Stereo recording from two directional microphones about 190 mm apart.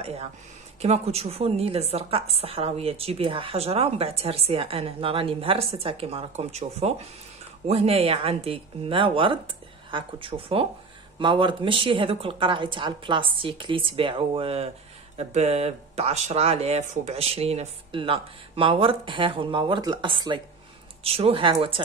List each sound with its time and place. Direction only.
0.0 s a woman's voice: 30° right (ahead or behind)